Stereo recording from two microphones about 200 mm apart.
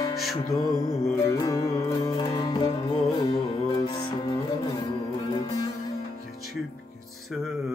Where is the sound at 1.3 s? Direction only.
15° left (ahead or behind).